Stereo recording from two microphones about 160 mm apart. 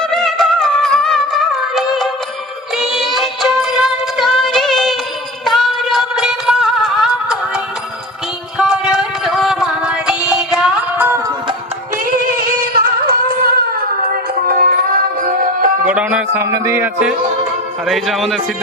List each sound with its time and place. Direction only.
0.0 s music: 5° left (ahead or behind)
12.8 s music: 65° right (ahead or behind)
15.9 s a sound: 5° right (ahead or behind)
16.4 s a man's voice: 15° right (ahead or behind); by 18.3 s centre (ahead or behind)